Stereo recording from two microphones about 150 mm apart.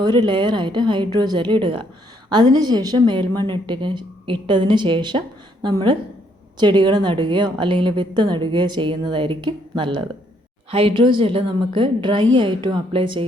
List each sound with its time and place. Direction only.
0.0 s a woman's voice: 30° right (ahead or behind)